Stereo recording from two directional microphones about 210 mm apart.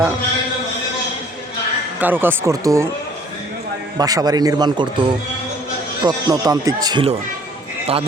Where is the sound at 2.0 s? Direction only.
10° right (ahead or behind).